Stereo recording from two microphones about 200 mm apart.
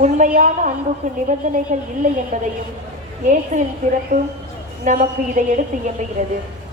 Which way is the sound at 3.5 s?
35° right (ahead or behind).